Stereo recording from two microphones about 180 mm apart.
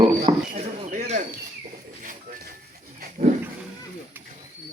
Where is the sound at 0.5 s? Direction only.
40° right (ahead or behind).